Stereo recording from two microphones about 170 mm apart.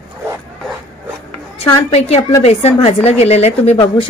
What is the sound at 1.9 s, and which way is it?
Speech, 40° left (ahead or behind).